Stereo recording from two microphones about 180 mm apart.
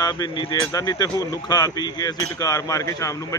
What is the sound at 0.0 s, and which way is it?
Speech, 25° left (ahead or behind).